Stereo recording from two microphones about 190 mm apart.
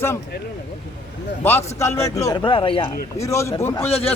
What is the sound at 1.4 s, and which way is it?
A man's voice, 10° left (ahead or behind).